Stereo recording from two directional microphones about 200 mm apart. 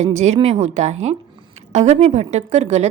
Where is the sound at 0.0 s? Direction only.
35° right (ahead or behind).